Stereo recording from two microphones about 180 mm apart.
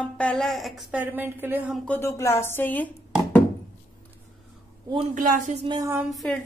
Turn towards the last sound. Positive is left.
turn(degrees=0)  # may be behind; listen again after turning